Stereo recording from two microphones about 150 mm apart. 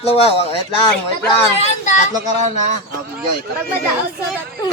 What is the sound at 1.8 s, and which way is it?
Speech, 55° left (ahead or behind).